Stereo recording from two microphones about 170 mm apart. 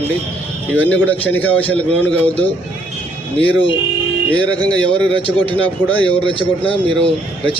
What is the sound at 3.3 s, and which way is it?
Speech, 30° left (ahead or behind).